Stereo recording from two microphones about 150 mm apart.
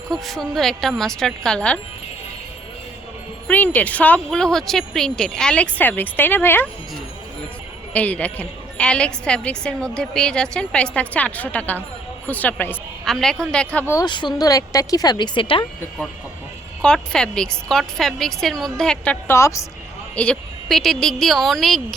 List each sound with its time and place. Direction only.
0.1 s a woman's voice: centre (ahead or behind)
3.4 s a woman's voice: 10° left (ahead or behind)
7.9 s a woman's voice: 10° left (ahead or behind)
13.9 s speech: 30° left (ahead or behind)
16.8 s a woman's voice: 5° left (ahead or behind)
19.3 s speech: 20° left (ahead or behind)
20.1 s a woman's voice: 5° left (ahead or behind)